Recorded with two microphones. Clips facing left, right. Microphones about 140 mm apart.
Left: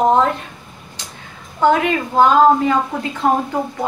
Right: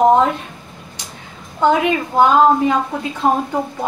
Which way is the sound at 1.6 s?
15° right (ahead or behind).